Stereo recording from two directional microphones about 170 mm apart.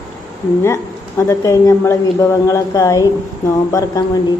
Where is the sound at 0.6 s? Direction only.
15° left (ahead or behind).